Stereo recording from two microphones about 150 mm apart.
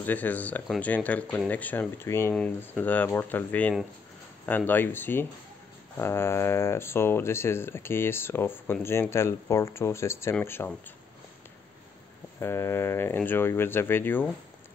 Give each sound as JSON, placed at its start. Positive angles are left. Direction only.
{"t": 0.0, "sound": "speech", "side_deg": 10}
{"t": 12.4, "sound": "speech", "side_deg": 15}